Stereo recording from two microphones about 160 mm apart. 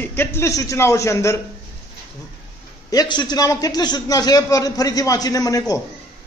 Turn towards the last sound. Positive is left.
turn(degrees=20)  # may be behind; listen again after turning